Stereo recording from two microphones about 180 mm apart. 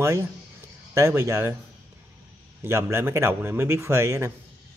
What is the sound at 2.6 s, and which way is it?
Speech, 15° right (ahead or behind).